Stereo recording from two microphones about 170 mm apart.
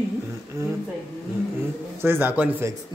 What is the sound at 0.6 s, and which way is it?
Speech, 15° right (ahead or behind).